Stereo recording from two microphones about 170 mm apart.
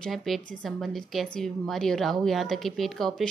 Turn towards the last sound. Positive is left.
turn(degrees=0)  # may be behind; listen again after turning